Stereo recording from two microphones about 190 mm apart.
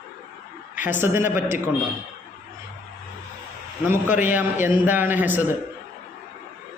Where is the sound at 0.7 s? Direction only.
45° left (ahead or behind).